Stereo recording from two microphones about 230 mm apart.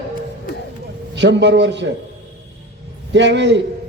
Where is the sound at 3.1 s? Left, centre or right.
Right.